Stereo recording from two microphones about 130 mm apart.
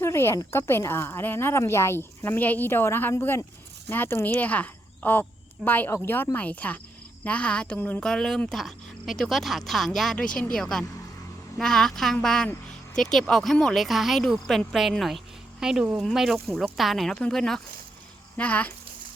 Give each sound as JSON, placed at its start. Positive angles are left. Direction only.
{"t": 0.0, "sound": "a woman's voice", "side_deg": 20}